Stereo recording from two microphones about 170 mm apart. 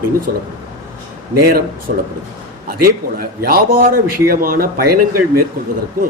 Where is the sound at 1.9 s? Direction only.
55° right (ahead or behind).